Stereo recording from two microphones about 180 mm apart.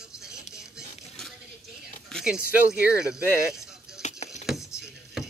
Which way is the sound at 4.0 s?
40° left (ahead or behind).